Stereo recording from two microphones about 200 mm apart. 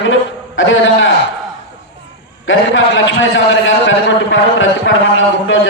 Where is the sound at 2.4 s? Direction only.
75° left (ahead or behind).